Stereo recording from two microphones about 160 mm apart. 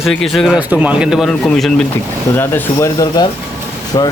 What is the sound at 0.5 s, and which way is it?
Speech, 10° right (ahead or behind).